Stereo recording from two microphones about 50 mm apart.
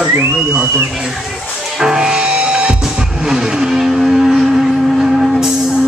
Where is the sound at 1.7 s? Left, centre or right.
Centre.